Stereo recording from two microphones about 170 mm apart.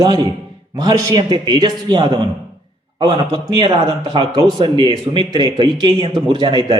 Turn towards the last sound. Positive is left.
turn(degrees=-30)  # may be behind; listen again after turning